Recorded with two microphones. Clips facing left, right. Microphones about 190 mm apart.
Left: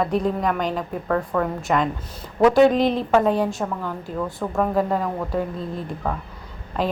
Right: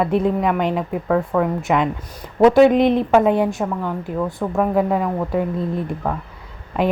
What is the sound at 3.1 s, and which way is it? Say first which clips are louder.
A woman's voice: right 3 dB; 20° right (ahead or behind).